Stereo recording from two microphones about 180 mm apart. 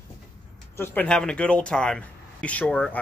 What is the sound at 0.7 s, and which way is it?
Speech, 10° left (ahead or behind).